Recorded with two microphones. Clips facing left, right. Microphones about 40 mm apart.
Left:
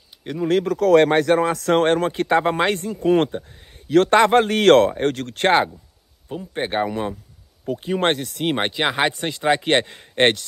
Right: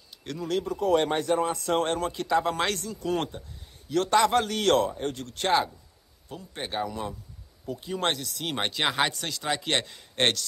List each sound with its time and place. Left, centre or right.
0.3 s speech: left
0.7 s speech: left
6.2 s speech: left